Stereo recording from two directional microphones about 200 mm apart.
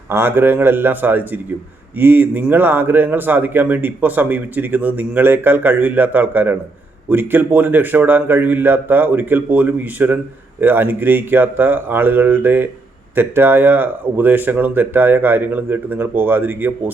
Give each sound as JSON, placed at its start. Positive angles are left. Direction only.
{"t": 0.1, "sound": "speech", "side_deg": -10}